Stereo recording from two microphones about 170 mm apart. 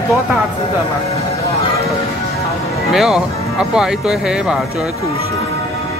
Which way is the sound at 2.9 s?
Centre (ahead or behind).